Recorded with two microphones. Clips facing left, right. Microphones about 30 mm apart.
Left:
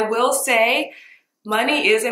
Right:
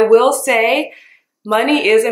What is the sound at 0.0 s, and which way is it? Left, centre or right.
A woman's voice, centre.